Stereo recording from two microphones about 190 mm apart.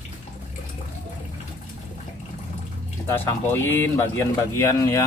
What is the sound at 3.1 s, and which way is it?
Speech, 10° left (ahead or behind).